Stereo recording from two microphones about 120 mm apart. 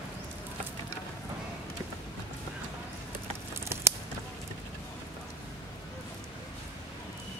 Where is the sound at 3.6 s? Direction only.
20° right (ahead or behind).